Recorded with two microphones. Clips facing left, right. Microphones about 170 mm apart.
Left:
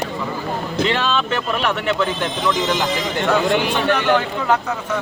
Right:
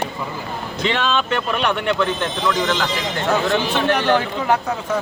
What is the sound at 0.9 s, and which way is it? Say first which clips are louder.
A man's voice: right 3 dB; centre (ahead or behind).